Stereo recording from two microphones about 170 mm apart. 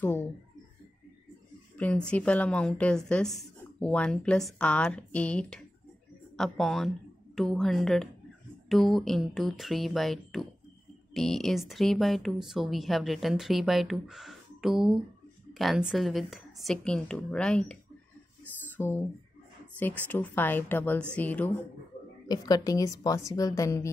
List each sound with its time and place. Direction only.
0.0 s a sound: 15° left (ahead or behind)
1.8 s a woman's voice: 5° left (ahead or behind)
18.8 s a woman's voice: 15° left (ahead or behind)
22.3 s a woman's voice: 20° left (ahead or behind)